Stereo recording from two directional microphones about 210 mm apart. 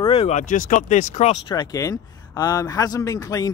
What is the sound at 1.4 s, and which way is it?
Speech, 15° left (ahead or behind).